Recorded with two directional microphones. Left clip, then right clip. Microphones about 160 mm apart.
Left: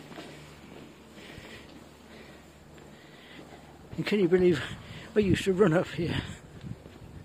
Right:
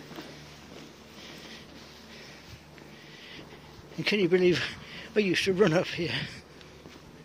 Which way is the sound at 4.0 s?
30° left (ahead or behind).